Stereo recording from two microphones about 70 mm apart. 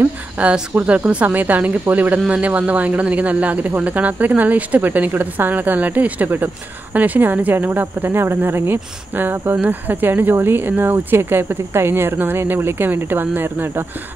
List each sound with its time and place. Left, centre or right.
0.4 s speech: centre